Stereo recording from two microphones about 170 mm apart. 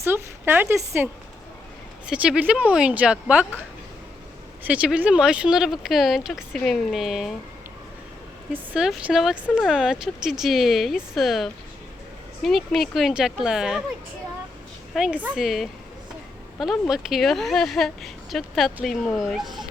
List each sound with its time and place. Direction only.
0.0 s speech: 10° right (ahead or behind)
4.6 s speech: 10° right (ahead or behind)
8.5 s speech: 5° right (ahead or behind)
14.9 s speech: 5° right (ahead or behind)